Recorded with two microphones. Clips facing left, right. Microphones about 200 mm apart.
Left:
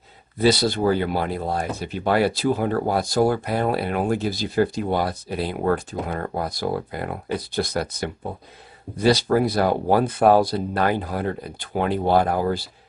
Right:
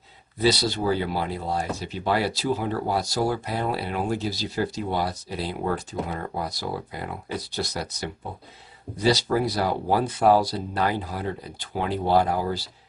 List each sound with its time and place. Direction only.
0.4 s speech: 50° left (ahead or behind)